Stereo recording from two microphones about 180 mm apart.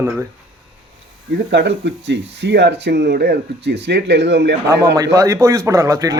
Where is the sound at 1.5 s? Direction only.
75° right (ahead or behind).